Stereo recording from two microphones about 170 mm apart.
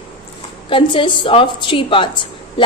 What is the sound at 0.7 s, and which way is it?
A woman's voice, 30° left (ahead or behind).